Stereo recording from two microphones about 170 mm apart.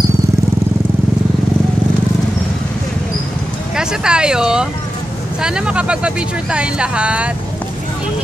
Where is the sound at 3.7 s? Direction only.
5° right (ahead or behind).